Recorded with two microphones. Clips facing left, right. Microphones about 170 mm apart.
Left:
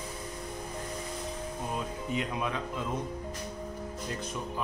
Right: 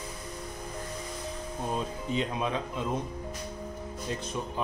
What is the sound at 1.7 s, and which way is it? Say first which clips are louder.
Speech: right 3 dB; 30° right (ahead or behind).